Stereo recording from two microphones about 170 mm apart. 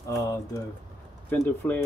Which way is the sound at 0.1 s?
20° left (ahead or behind).